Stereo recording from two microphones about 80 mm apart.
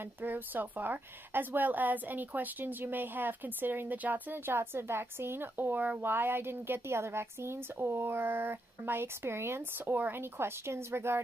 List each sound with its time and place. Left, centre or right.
0.0 s speech: right